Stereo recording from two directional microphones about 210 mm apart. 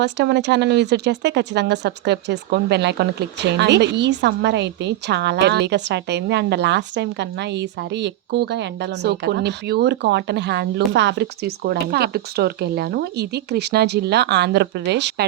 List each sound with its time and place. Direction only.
0.0 s speech: 55° right (ahead or behind)